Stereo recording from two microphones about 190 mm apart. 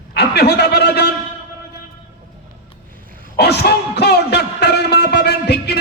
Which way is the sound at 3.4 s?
60° left (ahead or behind).